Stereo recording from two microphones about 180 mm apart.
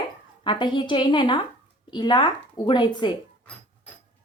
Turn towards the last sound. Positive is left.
turn(degrees=25)  # may be behind; listen again after turning